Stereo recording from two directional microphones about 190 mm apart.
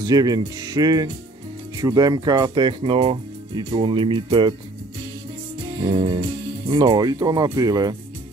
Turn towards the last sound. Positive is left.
turn(degrees=-20)  # may be behind; listen again after turning